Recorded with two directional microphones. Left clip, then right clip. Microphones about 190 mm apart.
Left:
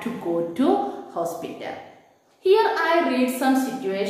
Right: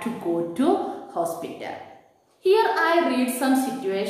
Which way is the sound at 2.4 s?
15° right (ahead or behind).